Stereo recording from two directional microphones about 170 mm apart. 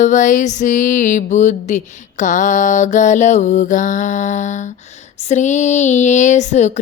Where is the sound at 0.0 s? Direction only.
50° left (ahead or behind).